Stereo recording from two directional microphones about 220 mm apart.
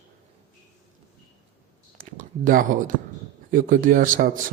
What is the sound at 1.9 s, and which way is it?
A man's voice, 40° right (ahead or behind).